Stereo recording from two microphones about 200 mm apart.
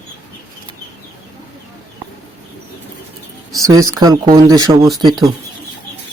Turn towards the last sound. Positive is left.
turn(degrees=-20)  # may be behind; listen again after turning